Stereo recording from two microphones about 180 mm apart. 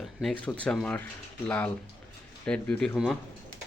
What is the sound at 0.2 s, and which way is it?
Speech, centre (ahead or behind).